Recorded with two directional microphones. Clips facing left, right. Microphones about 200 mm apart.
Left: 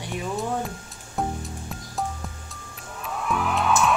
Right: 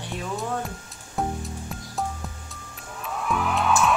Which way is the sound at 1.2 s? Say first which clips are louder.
Even; centre (ahead or behind).